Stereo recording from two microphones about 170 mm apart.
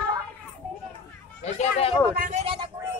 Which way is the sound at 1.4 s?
40° left (ahead or behind).